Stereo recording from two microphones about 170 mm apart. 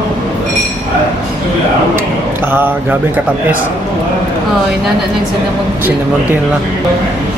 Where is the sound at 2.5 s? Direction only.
10° right (ahead or behind).